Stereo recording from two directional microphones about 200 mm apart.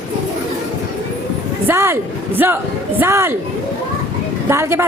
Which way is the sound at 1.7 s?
10° right (ahead or behind).